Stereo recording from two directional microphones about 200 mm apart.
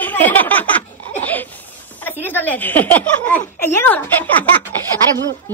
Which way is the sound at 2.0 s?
10° left (ahead or behind).